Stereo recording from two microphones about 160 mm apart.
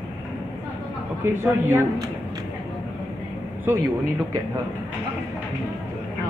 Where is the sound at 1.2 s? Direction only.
15° right (ahead or behind).